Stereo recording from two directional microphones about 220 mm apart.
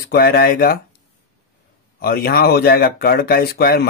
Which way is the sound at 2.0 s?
45° left (ahead or behind).